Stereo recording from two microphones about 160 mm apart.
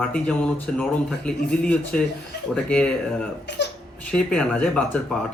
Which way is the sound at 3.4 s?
90° left.